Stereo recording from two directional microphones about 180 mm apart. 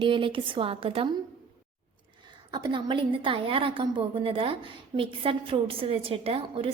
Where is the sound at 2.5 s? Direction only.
25° right (ahead or behind).